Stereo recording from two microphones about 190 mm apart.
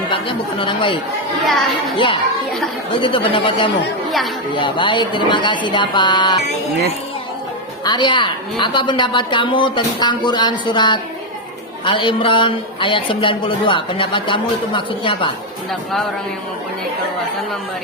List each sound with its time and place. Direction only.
0.1 s a man's voice: 25° left (ahead or behind)
1.5 s a child's voice: centre (ahead or behind)
2.9 s a man's voice: 25° left (ahead or behind)
7.9 s a man's voice: 25° left (ahead or behind)